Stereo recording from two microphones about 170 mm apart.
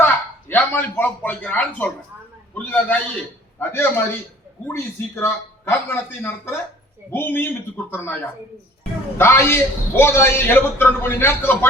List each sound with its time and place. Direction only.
0.0 s a sound: 10° left (ahead or behind)
2.6 s a man's voice: 10° left (ahead or behind)
9.1 s a man's voice: 15° left (ahead or behind)